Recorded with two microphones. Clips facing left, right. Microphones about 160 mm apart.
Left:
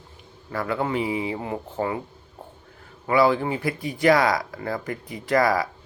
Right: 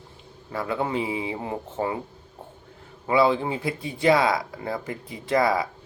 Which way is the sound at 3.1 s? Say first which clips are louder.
Left 1 dB; 25° right (ahead or behind).